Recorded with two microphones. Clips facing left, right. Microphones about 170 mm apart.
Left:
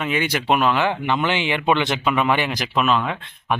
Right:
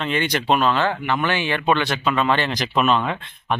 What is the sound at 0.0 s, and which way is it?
Speech, 10° left (ahead or behind).